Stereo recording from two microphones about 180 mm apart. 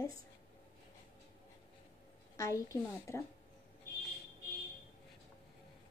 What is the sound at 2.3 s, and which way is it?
Speech, 15° left (ahead or behind).